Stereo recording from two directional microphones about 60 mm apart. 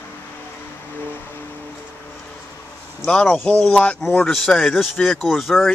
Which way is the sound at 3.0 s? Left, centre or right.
Centre.